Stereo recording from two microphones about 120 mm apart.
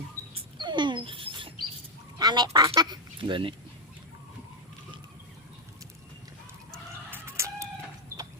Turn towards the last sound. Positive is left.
turn(degrees=-25)  # may be behind; listen again after turning